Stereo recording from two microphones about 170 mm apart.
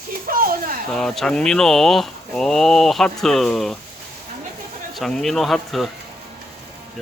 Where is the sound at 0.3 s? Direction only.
60° right (ahead or behind).